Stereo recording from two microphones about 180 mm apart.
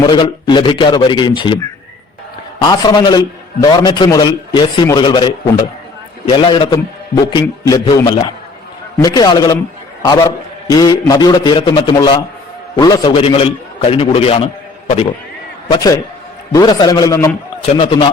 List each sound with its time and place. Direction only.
0.0 s a man's voice: 25° left (ahead or behind)
2.6 s a man's voice: 25° left (ahead or behind)
15.7 s a man's voice: 20° left (ahead or behind)